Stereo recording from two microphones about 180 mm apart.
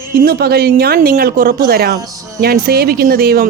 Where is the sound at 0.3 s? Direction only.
60° right (ahead or behind).